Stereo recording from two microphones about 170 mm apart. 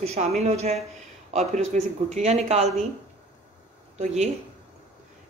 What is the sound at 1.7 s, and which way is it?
Speech, 50° right (ahead or behind).